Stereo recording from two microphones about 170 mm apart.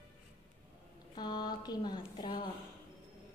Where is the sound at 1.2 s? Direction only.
25° left (ahead or behind).